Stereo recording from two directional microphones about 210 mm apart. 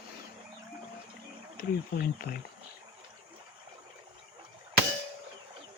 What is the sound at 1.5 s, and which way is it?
Speech, 45° left (ahead or behind).